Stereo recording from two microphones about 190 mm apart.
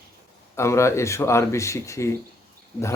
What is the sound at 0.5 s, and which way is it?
Speech, 15° left (ahead or behind).